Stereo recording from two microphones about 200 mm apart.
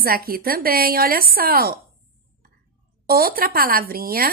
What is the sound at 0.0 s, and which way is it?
Speech, 50° right (ahead or behind).